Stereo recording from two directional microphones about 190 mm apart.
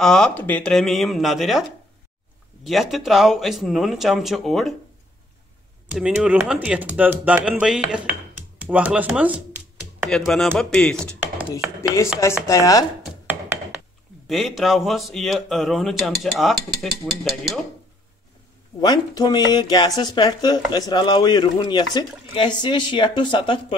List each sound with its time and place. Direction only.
0.0 s speech: 5° left (ahead or behind)
2.6 s speech: centre (ahead or behind)
5.9 s speech: 5° right (ahead or behind)
12.4 s speech: 15° left (ahead or behind)
14.2 s speech: centre (ahead or behind)
18.8 s speech: 20° left (ahead or behind)